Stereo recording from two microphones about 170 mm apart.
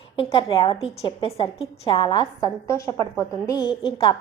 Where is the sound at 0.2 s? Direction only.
30° left (ahead or behind).